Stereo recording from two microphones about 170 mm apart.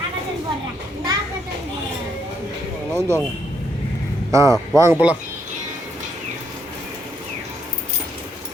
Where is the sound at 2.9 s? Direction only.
15° right (ahead or behind).